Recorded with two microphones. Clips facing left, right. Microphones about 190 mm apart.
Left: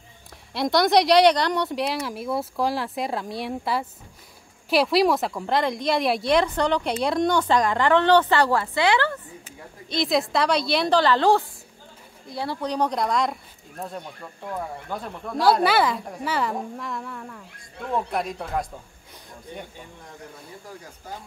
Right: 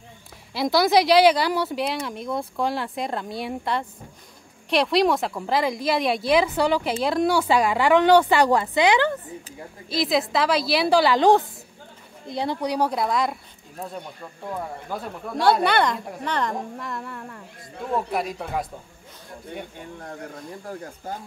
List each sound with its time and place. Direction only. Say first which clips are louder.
0.5 s a woman's voice: even; centre (ahead or behind)
9.8 s speech: even; centre (ahead or behind)
19.5 s speech: right 3 dB; 60° right (ahead or behind)